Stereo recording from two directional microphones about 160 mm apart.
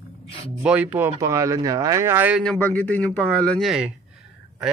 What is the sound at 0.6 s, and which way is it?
Speech, 10° right (ahead or behind).